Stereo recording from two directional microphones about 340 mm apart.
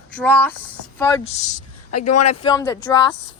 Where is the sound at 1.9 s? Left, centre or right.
Left.